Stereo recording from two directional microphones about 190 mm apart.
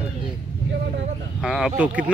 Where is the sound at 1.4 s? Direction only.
Centre (ahead or behind).